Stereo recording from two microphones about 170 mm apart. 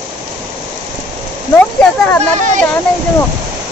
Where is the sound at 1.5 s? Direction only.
5° left (ahead or behind).